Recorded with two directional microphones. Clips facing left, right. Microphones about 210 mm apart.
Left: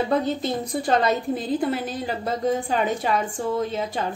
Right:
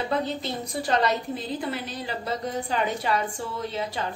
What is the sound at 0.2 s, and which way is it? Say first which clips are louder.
A woman's voice: left 5 dB; 50° left (ahead or behind).